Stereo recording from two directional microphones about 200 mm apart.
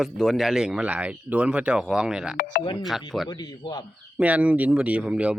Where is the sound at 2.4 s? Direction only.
50° left (ahead or behind).